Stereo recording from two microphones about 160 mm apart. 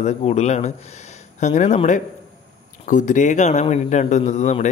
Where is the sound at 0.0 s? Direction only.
45° left (ahead or behind).